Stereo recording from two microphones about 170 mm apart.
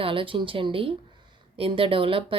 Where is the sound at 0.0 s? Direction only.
30° right (ahead or behind).